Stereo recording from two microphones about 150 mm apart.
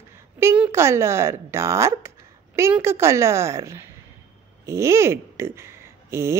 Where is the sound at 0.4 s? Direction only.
15° right (ahead or behind).